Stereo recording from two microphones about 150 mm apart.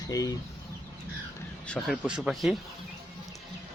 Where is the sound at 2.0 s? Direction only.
5° right (ahead or behind).